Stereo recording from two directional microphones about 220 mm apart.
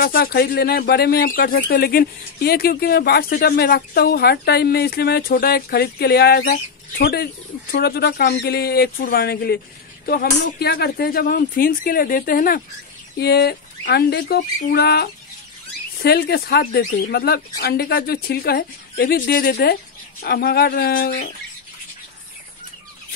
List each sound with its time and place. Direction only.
0.0 s speech: 40° left (ahead or behind)